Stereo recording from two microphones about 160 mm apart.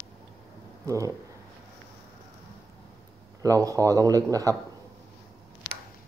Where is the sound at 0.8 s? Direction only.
20° right (ahead or behind).